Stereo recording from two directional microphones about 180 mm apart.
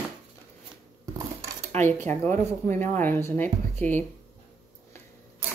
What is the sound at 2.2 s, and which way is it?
Speech, 15° left (ahead or behind).